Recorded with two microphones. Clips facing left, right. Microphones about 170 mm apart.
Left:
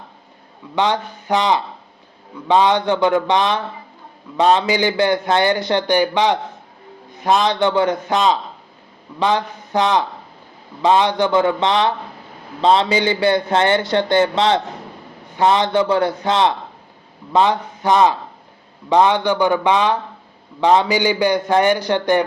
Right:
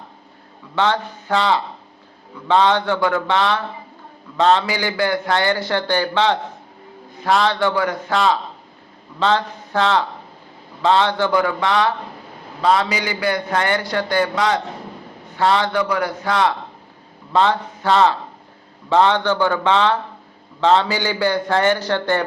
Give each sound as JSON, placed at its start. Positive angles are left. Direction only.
{"t": 0.8, "sound": "a man's voice", "side_deg": 15}